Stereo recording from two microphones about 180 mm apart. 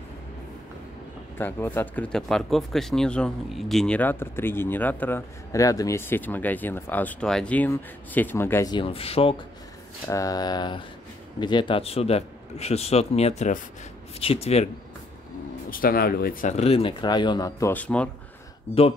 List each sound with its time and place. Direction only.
1.4 s speech: 10° left (ahead or behind)
8.7 s speech: 30° left (ahead or behind)
10.0 s a sound: 20° left (ahead or behind)
11.3 s speech: 25° left (ahead or behind)
15.7 s speech: 55° left (ahead or behind); by 18.1 s 5° left (ahead or behind)